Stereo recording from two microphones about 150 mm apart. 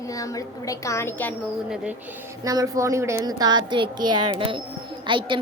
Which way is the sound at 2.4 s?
25° right (ahead or behind).